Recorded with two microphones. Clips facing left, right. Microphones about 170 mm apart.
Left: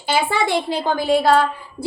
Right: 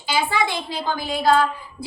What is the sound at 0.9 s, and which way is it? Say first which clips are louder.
Speech: left 4 dB; 60° left (ahead or behind).